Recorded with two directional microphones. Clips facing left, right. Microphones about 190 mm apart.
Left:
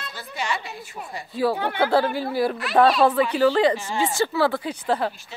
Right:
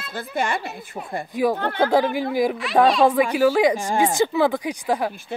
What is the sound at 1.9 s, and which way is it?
Speech, 15° right (ahead or behind).